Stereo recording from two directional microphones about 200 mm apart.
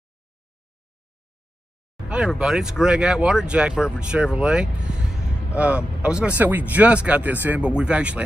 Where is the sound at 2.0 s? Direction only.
5° right (ahead or behind).